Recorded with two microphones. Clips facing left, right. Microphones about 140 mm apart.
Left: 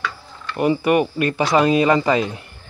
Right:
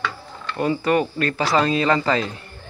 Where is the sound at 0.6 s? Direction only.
15° left (ahead or behind).